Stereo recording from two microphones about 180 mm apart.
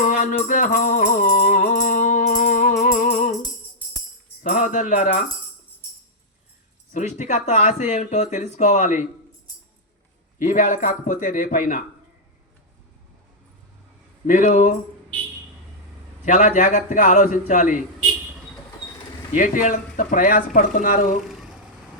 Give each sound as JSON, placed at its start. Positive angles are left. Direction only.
{"t": 0.0, "sound": "music", "side_deg": 45}
{"t": 4.4, "sound": "speech", "side_deg": 45}
{"t": 6.9, "sound": "speech", "side_deg": 40}
{"t": 10.3, "sound": "speech", "side_deg": 45}
{"t": 14.3, "sound": "speech", "side_deg": 45}
{"t": 16.2, "sound": "speech", "side_deg": 45}
{"t": 19.3, "sound": "speech", "side_deg": 45}
{"t": 21.2, "sound": "a sound", "side_deg": 0}